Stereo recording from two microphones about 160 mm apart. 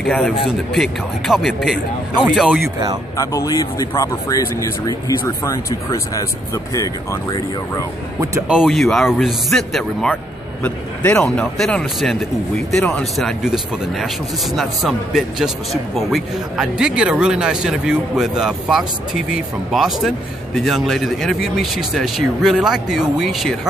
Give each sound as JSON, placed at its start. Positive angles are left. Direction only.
{"t": 0.0, "sound": "speech", "side_deg": 5}
{"t": 3.2, "sound": "speech", "side_deg": 20}
{"t": 8.5, "sound": "speech", "side_deg": 0}